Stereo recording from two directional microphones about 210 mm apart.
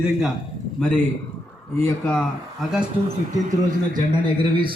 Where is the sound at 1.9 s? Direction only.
10° left (ahead or behind).